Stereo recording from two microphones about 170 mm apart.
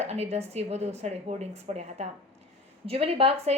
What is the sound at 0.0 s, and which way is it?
Speech, 40° right (ahead or behind).